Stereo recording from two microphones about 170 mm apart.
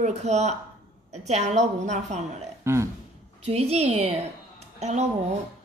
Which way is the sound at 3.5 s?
40° right (ahead or behind).